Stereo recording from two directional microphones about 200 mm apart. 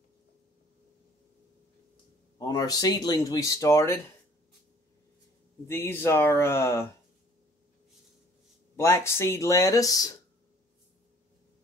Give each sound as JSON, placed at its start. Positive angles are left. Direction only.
{"t": 2.3, "sound": "speech", "side_deg": 20}
{"t": 5.7, "sound": "speech", "side_deg": 10}
{"t": 8.7, "sound": "speech", "side_deg": 15}